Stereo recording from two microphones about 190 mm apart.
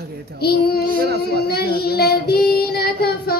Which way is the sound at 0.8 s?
50° right (ahead or behind).